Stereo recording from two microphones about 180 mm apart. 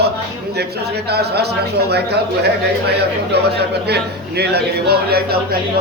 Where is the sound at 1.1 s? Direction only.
65° right (ahead or behind).